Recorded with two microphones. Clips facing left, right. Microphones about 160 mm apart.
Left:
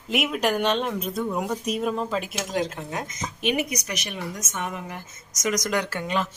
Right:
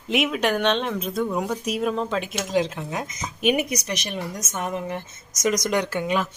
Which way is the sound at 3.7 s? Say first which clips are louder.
Right 3 dB; 35° right (ahead or behind).